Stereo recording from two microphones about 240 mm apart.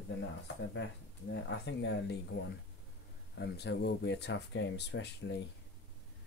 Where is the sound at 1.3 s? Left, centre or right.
Left.